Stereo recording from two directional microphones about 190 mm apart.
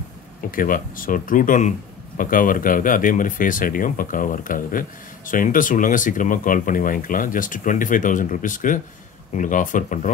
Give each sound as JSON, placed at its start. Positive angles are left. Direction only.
{"t": 0.5, "sound": "speech", "side_deg": 45}